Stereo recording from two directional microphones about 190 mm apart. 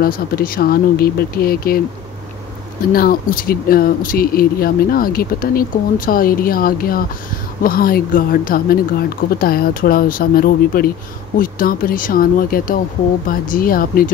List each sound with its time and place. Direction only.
0.0 s speech: 50° left (ahead or behind)
2.9 s speech: 50° left (ahead or behind)